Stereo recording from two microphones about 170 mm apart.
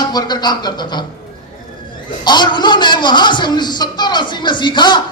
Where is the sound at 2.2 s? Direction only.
25° left (ahead or behind).